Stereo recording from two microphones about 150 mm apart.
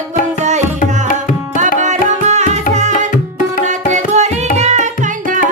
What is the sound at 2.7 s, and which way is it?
Tabla, 55° right (ahead or behind).